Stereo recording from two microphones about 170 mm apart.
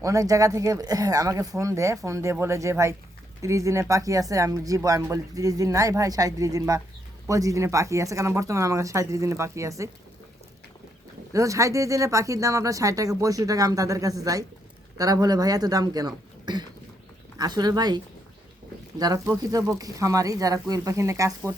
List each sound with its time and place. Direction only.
0.0 s speech: 20° right (ahead or behind)
11.3 s speech: 20° right (ahead or behind)